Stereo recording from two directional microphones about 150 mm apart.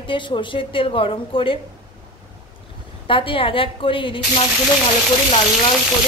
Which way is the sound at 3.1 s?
35° left (ahead or behind).